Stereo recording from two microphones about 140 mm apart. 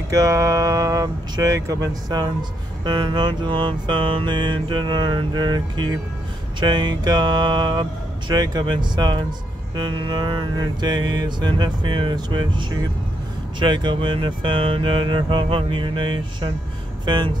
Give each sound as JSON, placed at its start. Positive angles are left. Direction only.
{"t": 0.1, "sound": "speech", "side_deg": -25}
{"t": 2.8, "sound": "music", "side_deg": -35}
{"t": 17.0, "sound": "speech", "side_deg": -30}